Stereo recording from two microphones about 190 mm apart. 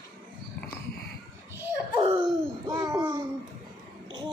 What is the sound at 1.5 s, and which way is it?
Belly laugh, 10° right (ahead or behind).